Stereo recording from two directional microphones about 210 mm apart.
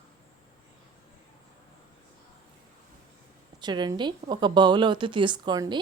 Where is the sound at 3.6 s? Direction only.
20° right (ahead or behind).